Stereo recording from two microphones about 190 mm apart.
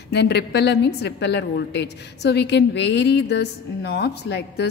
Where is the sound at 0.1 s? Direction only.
60° left (ahead or behind).